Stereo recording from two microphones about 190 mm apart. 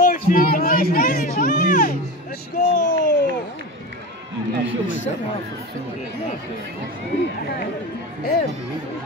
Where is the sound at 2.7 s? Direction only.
50° left (ahead or behind).